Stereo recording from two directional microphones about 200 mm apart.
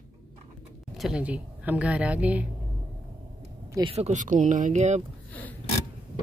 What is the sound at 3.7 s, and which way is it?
Speech, 25° right (ahead or behind).